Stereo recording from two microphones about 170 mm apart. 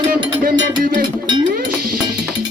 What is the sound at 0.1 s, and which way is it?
Speech, 55° right (ahead or behind).